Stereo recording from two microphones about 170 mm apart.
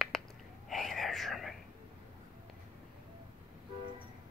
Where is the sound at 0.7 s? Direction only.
Centre (ahead or behind).